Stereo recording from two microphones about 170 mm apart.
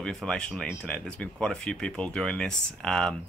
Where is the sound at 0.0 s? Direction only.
5° left (ahead or behind).